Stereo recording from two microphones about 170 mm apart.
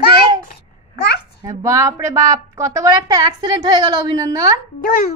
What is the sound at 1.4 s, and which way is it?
A woman's voice, 20° right (ahead or behind).